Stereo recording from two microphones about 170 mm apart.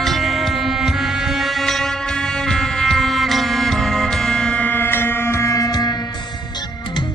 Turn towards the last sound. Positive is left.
turn(degrees=25)  # may be behind; listen again after turning